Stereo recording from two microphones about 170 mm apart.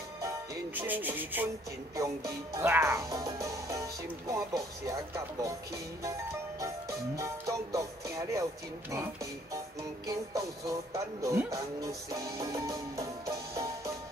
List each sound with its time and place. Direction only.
0.7 s rub: 10° right (ahead or behind)
2.0 s speech: 20° right (ahead or behind)
6.6 s music: 20° right (ahead or behind)
8.9 s speech: 20° right (ahead or behind)
10.0 s music: 20° right (ahead or behind)